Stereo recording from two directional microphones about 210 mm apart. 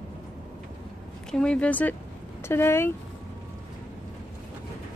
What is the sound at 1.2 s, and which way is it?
A woman's voice, 5° left (ahead or behind).